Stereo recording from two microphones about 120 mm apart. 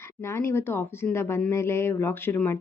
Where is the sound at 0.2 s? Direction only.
20° left (ahead or behind).